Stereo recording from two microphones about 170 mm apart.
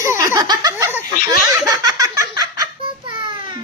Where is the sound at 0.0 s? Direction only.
15° right (ahead or behind).